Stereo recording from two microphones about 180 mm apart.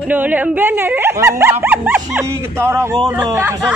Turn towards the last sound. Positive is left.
turn(degrees=-15)  # may be behind; listen again after turning